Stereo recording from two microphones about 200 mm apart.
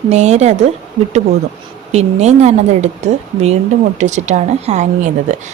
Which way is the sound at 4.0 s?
35° right (ahead or behind).